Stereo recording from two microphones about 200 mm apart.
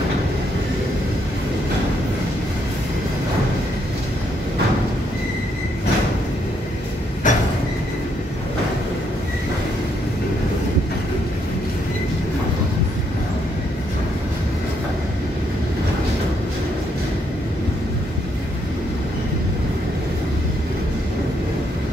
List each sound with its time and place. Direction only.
7.2 s train: 40° left (ahead or behind)